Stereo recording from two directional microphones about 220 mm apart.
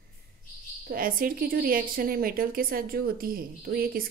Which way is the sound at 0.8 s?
40° right (ahead or behind).